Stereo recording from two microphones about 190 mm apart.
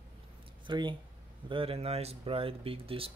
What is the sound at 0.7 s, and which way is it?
Speech, 25° right (ahead or behind).